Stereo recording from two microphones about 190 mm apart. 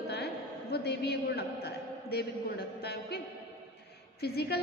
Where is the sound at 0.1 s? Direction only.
60° left (ahead or behind).